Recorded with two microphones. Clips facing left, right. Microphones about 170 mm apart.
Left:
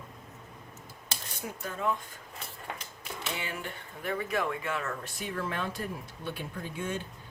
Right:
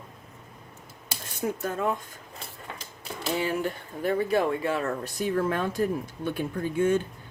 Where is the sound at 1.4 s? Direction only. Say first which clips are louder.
Right 8 dB; 50° right (ahead or behind).